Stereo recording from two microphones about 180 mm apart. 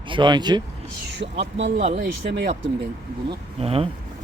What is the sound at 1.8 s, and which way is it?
Speech, 40° right (ahead or behind).